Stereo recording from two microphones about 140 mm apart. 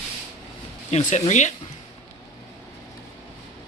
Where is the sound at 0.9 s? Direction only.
55° left (ahead or behind).